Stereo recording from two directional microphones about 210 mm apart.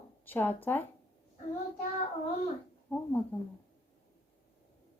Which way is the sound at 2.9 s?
10° left (ahead or behind).